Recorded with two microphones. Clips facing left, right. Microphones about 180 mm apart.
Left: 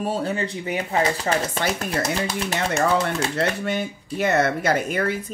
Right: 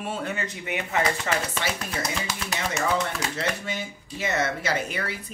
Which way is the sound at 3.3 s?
60° left (ahead or behind).